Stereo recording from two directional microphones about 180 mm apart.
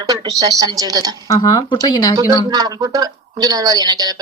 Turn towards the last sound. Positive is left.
turn(degrees=-20)  # may be behind; listen again after turning